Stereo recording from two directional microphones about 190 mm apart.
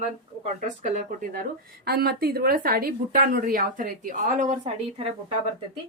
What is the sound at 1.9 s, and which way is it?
Speech, 55° right (ahead or behind).